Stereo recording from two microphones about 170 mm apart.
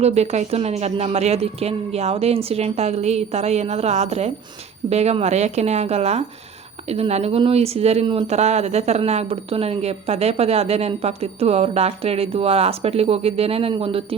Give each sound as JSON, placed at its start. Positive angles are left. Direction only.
{"t": 0.0, "sound": "speech", "side_deg": -40}